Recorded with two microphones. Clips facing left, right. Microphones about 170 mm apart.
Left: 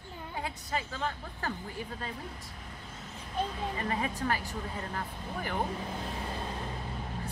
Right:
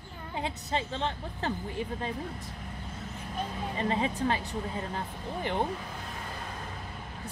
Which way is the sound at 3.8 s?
25° right (ahead or behind).